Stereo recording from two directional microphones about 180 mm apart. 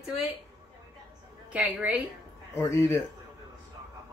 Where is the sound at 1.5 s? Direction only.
10° right (ahead or behind).